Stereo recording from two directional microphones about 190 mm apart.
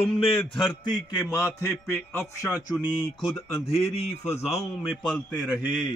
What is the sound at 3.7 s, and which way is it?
Speech, 35° left (ahead or behind).